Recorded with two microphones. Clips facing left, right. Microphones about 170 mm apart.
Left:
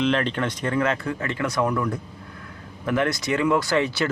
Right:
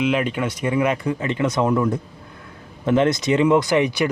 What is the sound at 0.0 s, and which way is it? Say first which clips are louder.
Speech: right 2 dB; 10° right (ahead or behind).